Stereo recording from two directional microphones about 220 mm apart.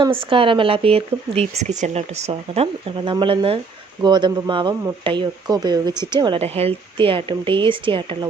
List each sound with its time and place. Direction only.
0.0 s speech: 25° right (ahead or behind)